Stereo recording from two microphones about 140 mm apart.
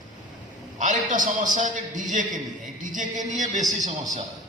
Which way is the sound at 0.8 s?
65° right (ahead or behind).